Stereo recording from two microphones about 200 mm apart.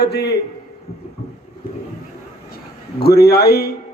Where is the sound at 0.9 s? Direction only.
50° left (ahead or behind).